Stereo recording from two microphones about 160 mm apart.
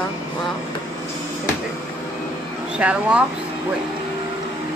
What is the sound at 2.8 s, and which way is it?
Speech, 10° right (ahead or behind).